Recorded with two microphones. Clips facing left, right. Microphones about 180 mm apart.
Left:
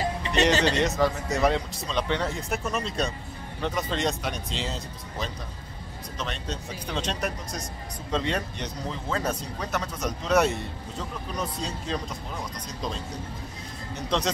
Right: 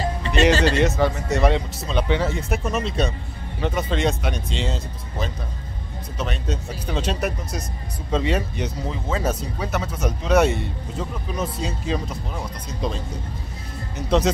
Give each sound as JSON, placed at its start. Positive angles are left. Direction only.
{"t": 0.5, "sound": "speech", "side_deg": 20}
{"t": 0.7, "sound": "speech", "side_deg": 0}
{"t": 13.9, "sound": "speech", "side_deg": -5}